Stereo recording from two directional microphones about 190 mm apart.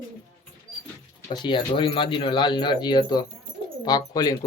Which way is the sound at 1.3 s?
25° left (ahead or behind).